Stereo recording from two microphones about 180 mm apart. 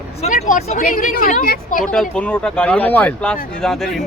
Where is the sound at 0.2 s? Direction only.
45° left (ahead or behind).